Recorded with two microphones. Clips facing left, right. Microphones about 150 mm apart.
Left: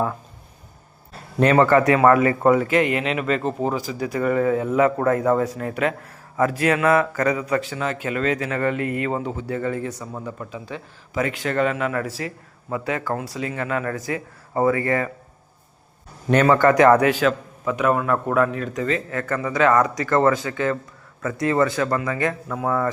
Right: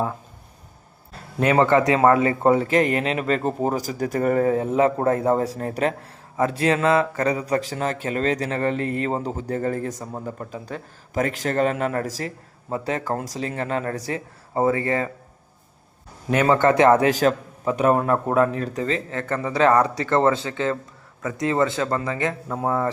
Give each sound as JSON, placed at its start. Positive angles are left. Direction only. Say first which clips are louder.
{"t": 1.5, "sound": "a man's voice", "louder": "left 1 dB", "side_deg": -20}
{"t": 16.5, "sound": "a man's voice", "louder": "left 1 dB", "side_deg": -25}
{"t": 17.1, "sound": "a man's voice", "louder": "even", "side_deg": -40}